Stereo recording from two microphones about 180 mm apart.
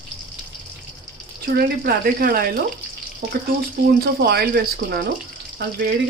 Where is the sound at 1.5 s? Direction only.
55° right (ahead or behind).